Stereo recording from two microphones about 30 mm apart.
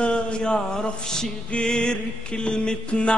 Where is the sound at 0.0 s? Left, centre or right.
Left.